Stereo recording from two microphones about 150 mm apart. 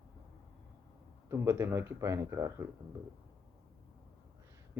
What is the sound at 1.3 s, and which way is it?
Speech, 15° right (ahead or behind).